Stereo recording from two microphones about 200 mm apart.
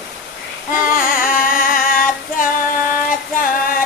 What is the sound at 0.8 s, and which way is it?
Music, 45° left (ahead or behind).